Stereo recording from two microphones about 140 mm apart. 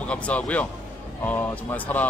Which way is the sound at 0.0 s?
10° left (ahead or behind).